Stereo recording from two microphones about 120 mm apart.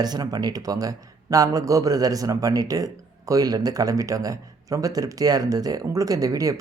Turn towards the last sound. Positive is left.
turn(degrees=-30)  # may be behind; listen again after turning